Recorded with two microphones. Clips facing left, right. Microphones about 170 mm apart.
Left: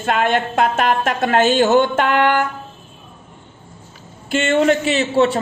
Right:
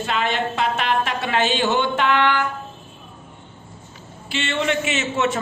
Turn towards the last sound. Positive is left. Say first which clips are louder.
# left 6 dB
turn(degrees=35)  # may be behind; listen again after turning